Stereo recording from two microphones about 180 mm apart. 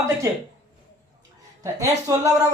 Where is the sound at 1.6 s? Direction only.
20° right (ahead or behind).